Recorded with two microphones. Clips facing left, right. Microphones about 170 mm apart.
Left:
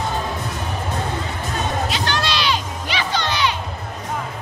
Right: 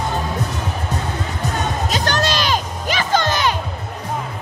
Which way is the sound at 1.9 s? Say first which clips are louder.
Right 3 dB; 45° right (ahead or behind).